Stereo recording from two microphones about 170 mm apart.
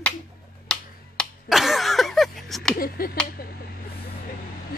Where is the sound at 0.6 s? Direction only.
Centre (ahead or behind).